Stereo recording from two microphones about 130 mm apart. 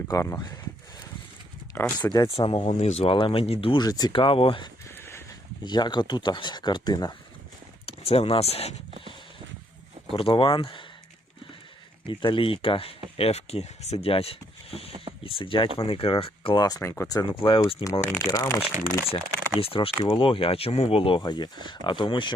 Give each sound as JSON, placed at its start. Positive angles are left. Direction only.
{"t": 0.1, "sound": "speech", "side_deg": 20}
{"t": 2.3, "sound": "speech", "side_deg": 45}
{"t": 3.1, "sound": "speech", "side_deg": 40}
{"t": 3.8, "sound": "speech", "side_deg": 30}
{"t": 4.9, "sound": "a sound", "side_deg": 20}
{"t": 5.6, "sound": "speech", "side_deg": 35}
{"t": 7.9, "sound": "speech", "side_deg": 50}
{"t": 10.1, "sound": "speech", "side_deg": 45}
{"t": 12.0, "sound": "speech", "side_deg": 40}
{"t": 16.6, "sound": "speech", "side_deg": 25}
{"t": 17.2, "sound": "speech", "side_deg": 40}
{"t": 18.3, "sound": "speech", "side_deg": 25}
{"t": 19.1, "sound": "speech", "side_deg": 45}
{"t": 21.2, "sound": "speech", "side_deg": 35}